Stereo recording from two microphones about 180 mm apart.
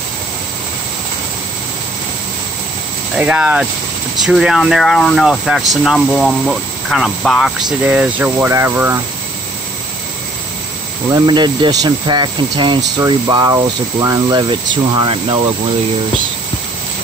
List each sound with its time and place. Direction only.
3.2 s speech: 5° right (ahead or behind)
11.1 s speech: 25° right (ahead or behind)